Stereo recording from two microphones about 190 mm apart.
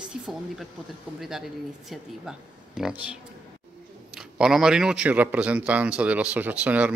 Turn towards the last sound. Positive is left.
turn(degrees=-5)  # may be behind; listen again after turning